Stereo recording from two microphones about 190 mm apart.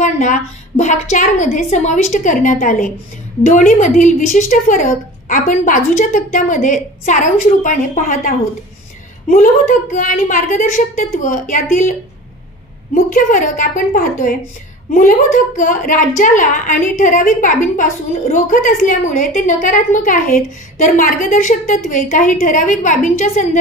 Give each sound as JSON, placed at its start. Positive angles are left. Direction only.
{"t": 0.0, "sound": "a woman's voice", "side_deg": 40}
{"t": 9.3, "sound": "a woman's voice", "side_deg": 45}
{"t": 12.9, "sound": "a woman's voice", "side_deg": 45}